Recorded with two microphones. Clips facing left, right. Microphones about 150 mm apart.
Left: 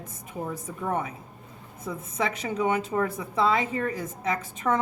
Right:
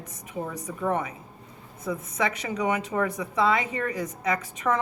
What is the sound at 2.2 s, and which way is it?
A woman's voice, 30° left (ahead or behind).